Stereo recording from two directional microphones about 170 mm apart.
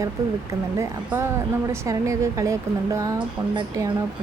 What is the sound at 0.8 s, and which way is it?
A woman's voice, 15° right (ahead or behind).